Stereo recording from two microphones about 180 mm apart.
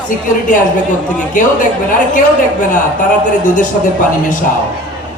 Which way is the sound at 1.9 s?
45° left (ahead or behind).